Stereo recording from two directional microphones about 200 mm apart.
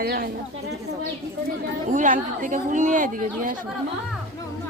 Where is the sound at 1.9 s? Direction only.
40° right (ahead or behind).